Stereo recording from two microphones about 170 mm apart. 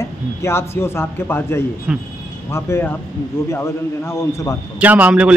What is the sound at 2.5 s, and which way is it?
A man's voice, 15° left (ahead or behind).